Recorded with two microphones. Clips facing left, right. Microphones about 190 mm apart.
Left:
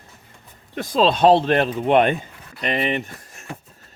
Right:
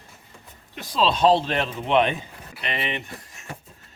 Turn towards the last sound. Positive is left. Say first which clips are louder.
# left 7 dB
turn(degrees=45)  # may be behind; listen again after turning